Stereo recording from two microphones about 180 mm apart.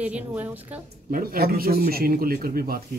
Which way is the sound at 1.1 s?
55° right (ahead or behind).